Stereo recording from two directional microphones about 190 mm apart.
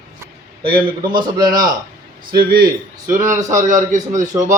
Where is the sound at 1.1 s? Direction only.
25° right (ahead or behind).